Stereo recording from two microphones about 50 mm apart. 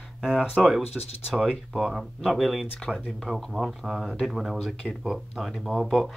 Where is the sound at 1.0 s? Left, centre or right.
Centre.